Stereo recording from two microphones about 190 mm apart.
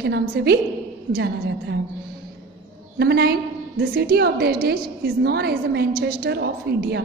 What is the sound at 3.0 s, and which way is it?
A woman's voice, 55° right (ahead or behind).